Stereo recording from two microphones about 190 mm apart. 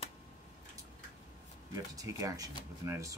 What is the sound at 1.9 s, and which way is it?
Speech, 20° right (ahead or behind).